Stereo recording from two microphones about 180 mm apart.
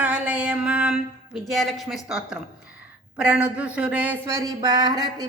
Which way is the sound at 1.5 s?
Centre (ahead or behind).